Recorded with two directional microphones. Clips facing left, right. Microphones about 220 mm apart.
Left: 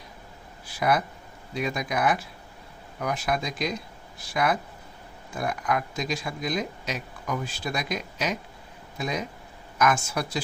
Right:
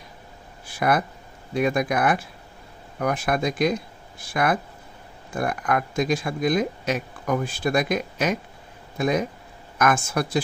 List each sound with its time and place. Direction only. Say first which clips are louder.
0.7 s speech: right 2 dB; 55° right (ahead or behind)